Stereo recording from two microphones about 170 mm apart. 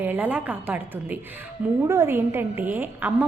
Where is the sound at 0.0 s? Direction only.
10° right (ahead or behind).